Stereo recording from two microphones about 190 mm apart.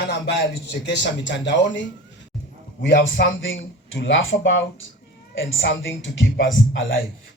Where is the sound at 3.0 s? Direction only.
70° left (ahead or behind).